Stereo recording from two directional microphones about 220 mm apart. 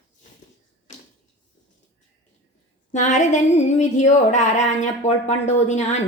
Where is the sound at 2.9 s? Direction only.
35° left (ahead or behind).